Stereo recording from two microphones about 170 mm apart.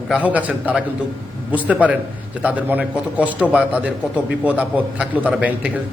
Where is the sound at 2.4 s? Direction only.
10° right (ahead or behind).